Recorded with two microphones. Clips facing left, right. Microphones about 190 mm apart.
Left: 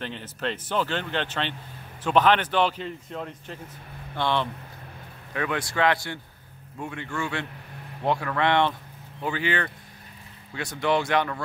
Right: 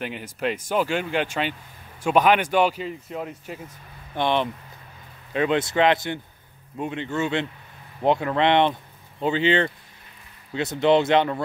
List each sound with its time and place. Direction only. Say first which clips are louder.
0.0 s speech: right 4 dB; 10° right (ahead or behind)